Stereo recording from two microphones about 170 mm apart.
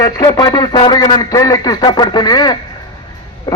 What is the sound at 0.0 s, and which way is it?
A man's voice, 20° left (ahead or behind).